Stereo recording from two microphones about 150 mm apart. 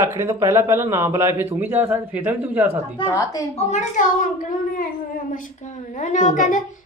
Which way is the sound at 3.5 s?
50° left (ahead or behind).